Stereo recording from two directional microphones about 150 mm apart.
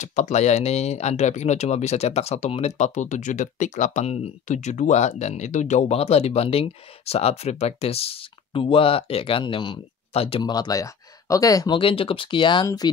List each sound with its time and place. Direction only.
0.0 s speech: 55° left (ahead or behind)
10.5 s speech: 25° left (ahead or behind)